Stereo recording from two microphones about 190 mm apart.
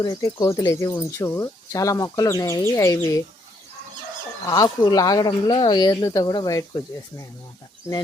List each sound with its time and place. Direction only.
0.0 s speech: 20° left (ahead or behind)
4.4 s speech: 20° left (ahead or behind)